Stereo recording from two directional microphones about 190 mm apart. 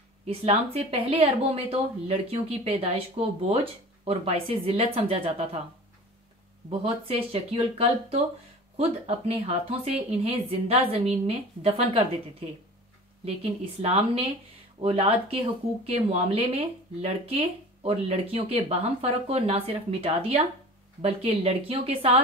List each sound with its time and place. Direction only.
0.3 s speech: 30° right (ahead or behind)
6.8 s speech: 30° right (ahead or behind)
13.2 s speech: 30° right (ahead or behind)